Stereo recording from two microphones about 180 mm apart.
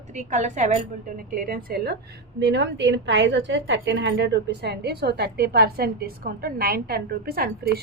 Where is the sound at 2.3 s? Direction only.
75° right (ahead or behind).